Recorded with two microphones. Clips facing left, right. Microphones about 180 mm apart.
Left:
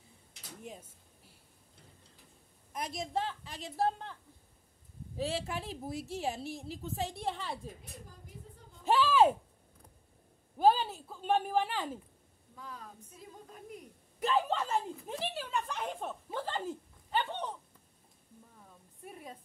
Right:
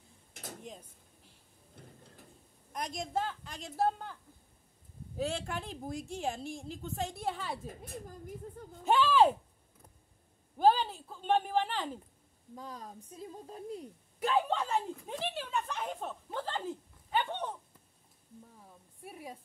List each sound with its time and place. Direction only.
0.3 s drawer open or close: 50° right (ahead or behind)
0.7 s a sound: 5° left (ahead or behind)
2.7 s a woman's voice: 5° left (ahead or behind)
7.6 s speech: 50° right (ahead or behind)
8.8 s speech: 5° left (ahead or behind)
10.6 s a woman's voice: 5° left (ahead or behind)
12.5 s a woman's voice: 35° right (ahead or behind)
14.2 s a woman's voice: centre (ahead or behind)
19.0 s a sound: 10° right (ahead or behind)